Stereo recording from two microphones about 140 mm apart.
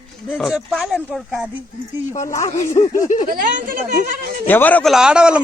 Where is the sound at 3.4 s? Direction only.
70° right (ahead or behind).